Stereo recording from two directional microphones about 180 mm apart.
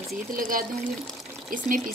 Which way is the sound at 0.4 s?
50° right (ahead or behind).